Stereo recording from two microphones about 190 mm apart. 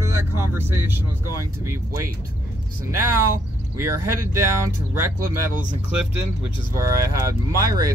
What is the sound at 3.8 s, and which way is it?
Speech, 15° right (ahead or behind).